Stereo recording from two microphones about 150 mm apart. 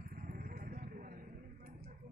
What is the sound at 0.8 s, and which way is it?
Vehicle, 65° right (ahead or behind).